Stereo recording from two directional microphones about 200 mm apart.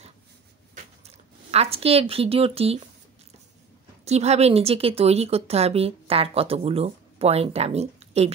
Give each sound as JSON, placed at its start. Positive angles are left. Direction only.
{"t": 1.0, "sound": "speech", "side_deg": -30}
{"t": 4.0, "sound": "a woman's voice", "side_deg": -35}